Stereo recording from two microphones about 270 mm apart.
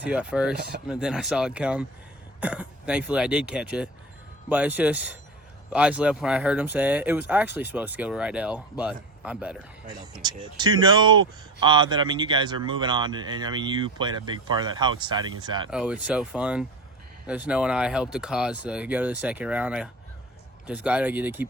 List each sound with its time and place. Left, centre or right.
0.0 s speech: centre
15.7 s speech: centre